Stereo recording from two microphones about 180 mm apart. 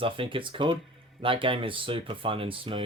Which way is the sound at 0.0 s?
30° right (ahead or behind).